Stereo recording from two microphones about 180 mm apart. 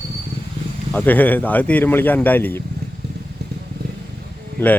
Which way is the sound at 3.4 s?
60° right (ahead or behind).